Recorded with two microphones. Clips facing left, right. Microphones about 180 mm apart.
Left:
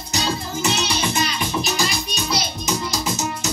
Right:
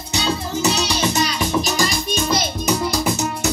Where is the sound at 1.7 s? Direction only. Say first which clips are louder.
Right 4 dB; 50° right (ahead or behind).